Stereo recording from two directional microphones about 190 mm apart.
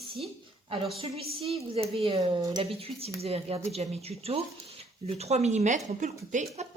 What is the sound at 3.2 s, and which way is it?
A woman's voice, 30° right (ahead or behind).